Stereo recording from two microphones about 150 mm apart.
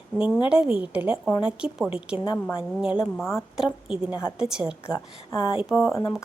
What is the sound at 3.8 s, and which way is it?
Speech, 35° left (ahead or behind).